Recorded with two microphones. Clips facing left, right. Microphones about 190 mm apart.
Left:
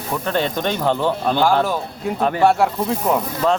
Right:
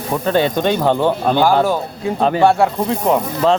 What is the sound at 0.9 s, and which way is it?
Speech, 30° right (ahead or behind).